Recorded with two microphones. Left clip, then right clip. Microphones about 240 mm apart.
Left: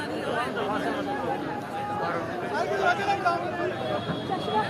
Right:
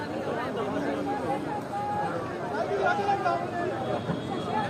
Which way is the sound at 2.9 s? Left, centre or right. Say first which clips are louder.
Left 2 dB; left.